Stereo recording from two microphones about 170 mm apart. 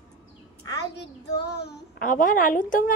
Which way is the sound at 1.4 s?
75° left (ahead or behind).